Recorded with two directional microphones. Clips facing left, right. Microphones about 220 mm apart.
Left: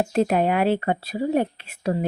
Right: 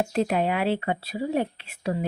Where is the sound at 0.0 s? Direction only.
45° left (ahead or behind).